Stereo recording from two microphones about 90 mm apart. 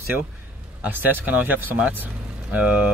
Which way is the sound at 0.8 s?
20° right (ahead or behind).